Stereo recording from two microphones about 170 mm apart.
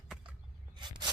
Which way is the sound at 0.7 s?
25° right (ahead or behind).